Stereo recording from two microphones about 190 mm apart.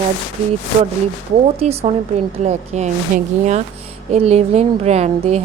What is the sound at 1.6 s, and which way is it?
A woman's voice, 35° right (ahead or behind).